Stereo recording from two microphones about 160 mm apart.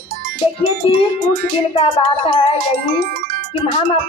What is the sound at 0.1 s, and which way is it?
Music, 65° right (ahead or behind).